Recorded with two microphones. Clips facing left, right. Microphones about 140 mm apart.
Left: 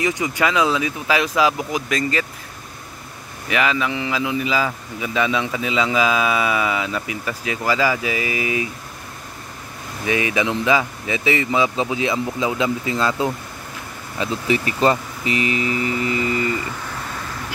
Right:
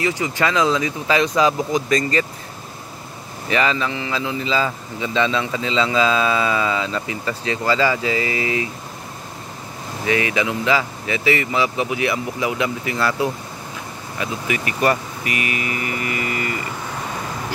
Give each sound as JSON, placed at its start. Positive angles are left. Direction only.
{"t": 0.0, "sound": "a man's voice", "side_deg": 20}
{"t": 3.4, "sound": "a man's voice", "side_deg": 5}
{"t": 10.0, "sound": "speech", "side_deg": 20}